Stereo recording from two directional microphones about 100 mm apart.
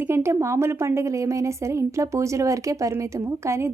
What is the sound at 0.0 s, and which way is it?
A woman's voice, 25° right (ahead or behind).